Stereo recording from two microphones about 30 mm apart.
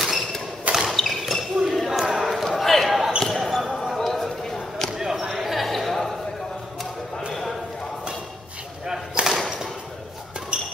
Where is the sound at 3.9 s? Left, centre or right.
Centre.